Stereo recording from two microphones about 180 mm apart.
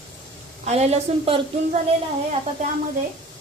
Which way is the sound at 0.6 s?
35° right (ahead or behind).